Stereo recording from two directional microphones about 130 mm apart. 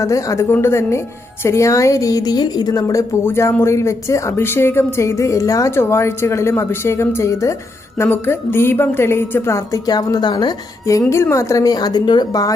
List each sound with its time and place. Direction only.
0.0 s a woman's voice: 25° left (ahead or behind)